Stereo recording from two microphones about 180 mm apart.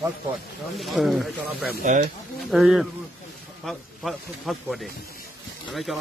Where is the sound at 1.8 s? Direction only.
45° right (ahead or behind).